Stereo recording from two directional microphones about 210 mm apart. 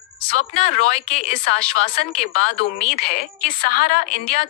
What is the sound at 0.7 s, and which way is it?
Speech, 35° left (ahead or behind).